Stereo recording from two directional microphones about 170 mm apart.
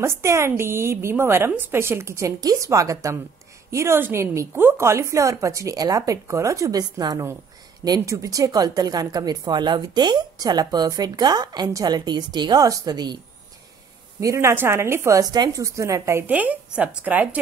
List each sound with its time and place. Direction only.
0.0 s a woman's voice: 15° right (ahead or behind)
14.2 s a woman's voice: 15° right (ahead or behind)